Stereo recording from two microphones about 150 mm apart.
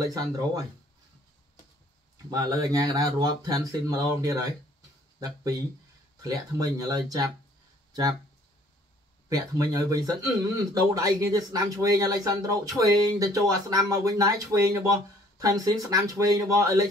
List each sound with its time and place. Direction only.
0.1 s speech: 25° right (ahead or behind)
2.2 s speech: 25° right (ahead or behind)
9.5 s speech: 25° right (ahead or behind)